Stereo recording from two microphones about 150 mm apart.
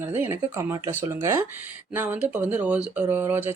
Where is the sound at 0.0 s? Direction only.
15° right (ahead or behind).